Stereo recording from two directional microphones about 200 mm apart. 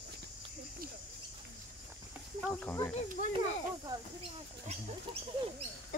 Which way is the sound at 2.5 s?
10° left (ahead or behind).